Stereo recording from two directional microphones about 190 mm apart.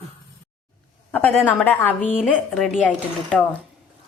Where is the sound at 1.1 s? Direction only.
10° left (ahead or behind).